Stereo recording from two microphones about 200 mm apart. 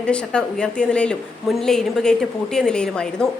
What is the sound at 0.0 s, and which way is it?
A woman's voice, 5° left (ahead or behind).